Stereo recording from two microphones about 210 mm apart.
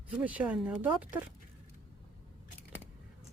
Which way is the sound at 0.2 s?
5° right (ahead or behind).